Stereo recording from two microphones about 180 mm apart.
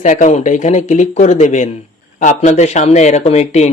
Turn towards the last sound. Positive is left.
turn(degrees=35)  # may be behind; listen again after turning